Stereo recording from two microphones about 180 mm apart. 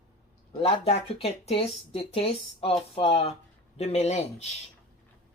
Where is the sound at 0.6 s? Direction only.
30° left (ahead or behind).